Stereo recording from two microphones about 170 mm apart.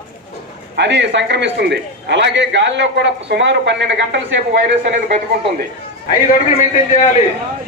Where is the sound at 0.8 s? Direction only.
90° right.